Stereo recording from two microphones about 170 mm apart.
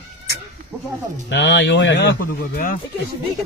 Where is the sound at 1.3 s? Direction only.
90° left; by 2.8 s 55° left (ahead or behind).